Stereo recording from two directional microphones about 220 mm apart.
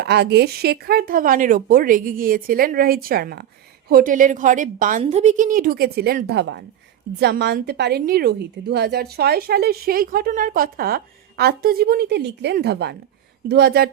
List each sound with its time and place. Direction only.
0.0 s a woman's voice: 50° right (ahead or behind)